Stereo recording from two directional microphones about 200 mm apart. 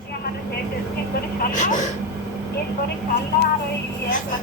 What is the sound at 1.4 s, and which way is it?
Speech, 40° left (ahead or behind).